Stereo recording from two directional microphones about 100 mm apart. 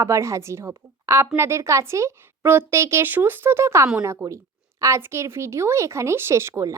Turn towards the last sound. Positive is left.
turn(degrees=-30)  # may be behind; listen again after turning